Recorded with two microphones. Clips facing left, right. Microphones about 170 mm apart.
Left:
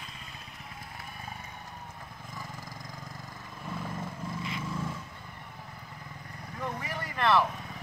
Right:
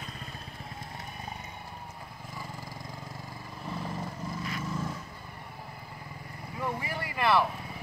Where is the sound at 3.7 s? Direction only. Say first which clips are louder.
Right 1 dB; 10° right (ahead or behind).